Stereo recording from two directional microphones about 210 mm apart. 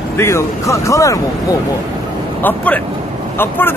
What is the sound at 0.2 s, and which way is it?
Speech, 15° left (ahead or behind).